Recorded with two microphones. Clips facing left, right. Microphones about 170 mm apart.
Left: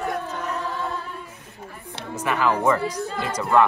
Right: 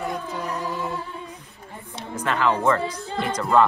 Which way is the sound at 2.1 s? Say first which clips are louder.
Even; 10° left (ahead or behind).